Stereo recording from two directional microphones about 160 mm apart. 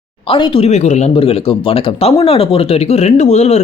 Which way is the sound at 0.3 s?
35° left (ahead or behind).